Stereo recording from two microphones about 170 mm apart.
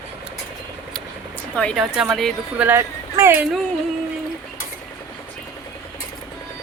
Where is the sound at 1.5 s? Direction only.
5° left (ahead or behind).